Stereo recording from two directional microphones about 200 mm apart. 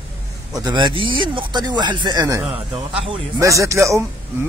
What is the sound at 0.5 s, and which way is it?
A man's voice, 20° right (ahead or behind).